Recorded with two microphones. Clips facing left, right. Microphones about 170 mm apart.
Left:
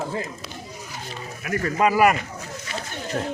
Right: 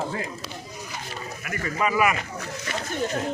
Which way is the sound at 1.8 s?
40° left (ahead or behind).